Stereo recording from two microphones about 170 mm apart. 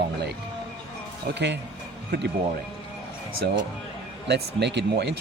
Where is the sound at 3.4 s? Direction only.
90° right.